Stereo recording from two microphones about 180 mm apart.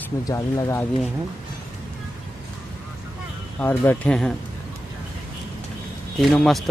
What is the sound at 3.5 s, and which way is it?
Speech, 10° left (ahead or behind).